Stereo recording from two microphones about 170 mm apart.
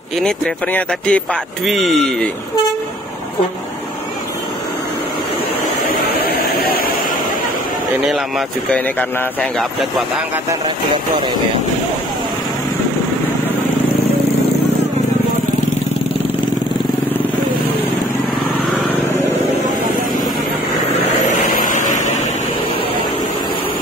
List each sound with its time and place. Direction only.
0.2 s speech: 5° left (ahead or behind)
6.2 s vehicle: 60° left (ahead or behind)
8.1 s speech: centre (ahead or behind)
21.3 s vehicle: 45° left (ahead or behind)